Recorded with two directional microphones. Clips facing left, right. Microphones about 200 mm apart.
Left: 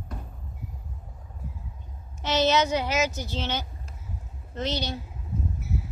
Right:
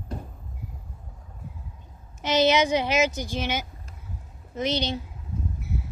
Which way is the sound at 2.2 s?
15° right (ahead or behind).